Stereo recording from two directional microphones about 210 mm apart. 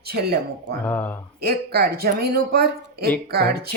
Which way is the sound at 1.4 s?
45° right (ahead or behind).